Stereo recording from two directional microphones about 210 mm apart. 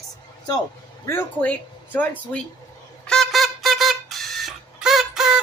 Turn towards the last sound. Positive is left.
turn(degrees=0)  # may be behind; listen again after turning